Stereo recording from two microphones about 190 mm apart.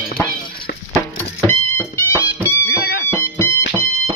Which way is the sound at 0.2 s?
10° left (ahead or behind).